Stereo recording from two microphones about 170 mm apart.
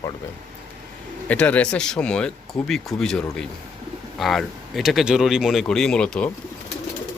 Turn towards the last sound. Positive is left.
turn(degrees=5)  # may be behind; listen again after turning